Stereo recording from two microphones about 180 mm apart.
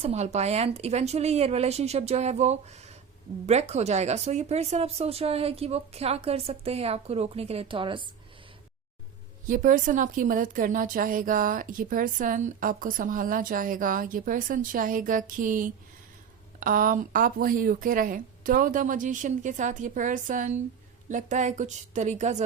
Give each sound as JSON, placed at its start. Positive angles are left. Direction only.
{"t": 0.0, "sound": "speech", "side_deg": -35}
{"t": 9.5, "sound": "a woman's voice", "side_deg": -50}